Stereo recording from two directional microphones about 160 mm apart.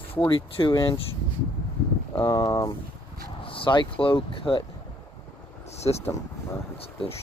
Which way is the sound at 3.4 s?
35° left (ahead or behind).